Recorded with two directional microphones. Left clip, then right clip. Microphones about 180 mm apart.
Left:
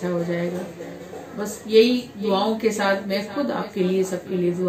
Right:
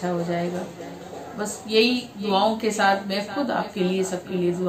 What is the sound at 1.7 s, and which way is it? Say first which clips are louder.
A woman's voice: left 4 dB; 30° right (ahead or behind).